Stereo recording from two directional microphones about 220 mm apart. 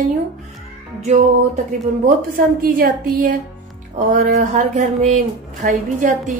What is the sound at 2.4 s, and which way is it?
A woman's voice, 40° right (ahead or behind).